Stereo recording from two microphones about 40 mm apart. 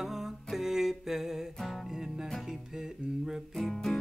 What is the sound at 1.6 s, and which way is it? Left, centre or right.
Music, centre.